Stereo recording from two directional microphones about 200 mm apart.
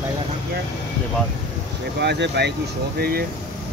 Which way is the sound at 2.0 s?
60° right (ahead or behind).